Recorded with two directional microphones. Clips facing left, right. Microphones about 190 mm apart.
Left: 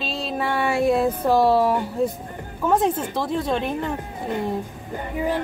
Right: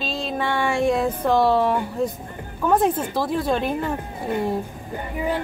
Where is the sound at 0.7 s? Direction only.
35° left (ahead or behind).